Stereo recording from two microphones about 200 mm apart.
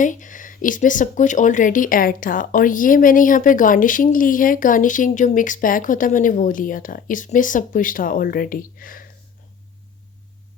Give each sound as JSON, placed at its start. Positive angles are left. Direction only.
{"t": 0.0, "sound": "speech", "side_deg": 40}